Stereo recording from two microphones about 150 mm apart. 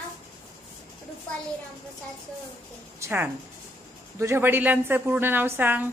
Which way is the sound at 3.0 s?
15° right (ahead or behind).